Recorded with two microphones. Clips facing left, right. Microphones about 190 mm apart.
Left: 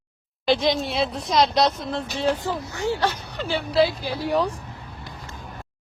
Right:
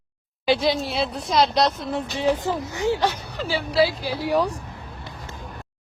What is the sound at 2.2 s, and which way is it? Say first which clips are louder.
Speech: right 2 dB; 15° right (ahead or behind).